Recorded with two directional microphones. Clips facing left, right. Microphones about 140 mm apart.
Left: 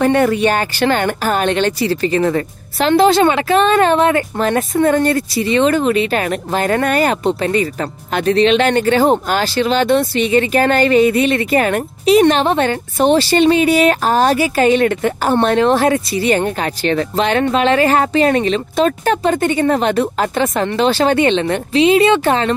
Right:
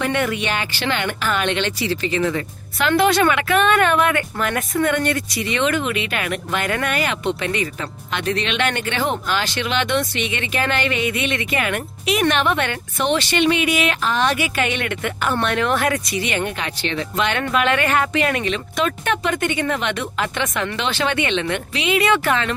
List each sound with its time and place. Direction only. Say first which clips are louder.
0.0 s a woman's voice: left 9 dB; 40° left (ahead or behind)
2.9 s a woman's voice: left 5 dB; 30° left (ahead or behind)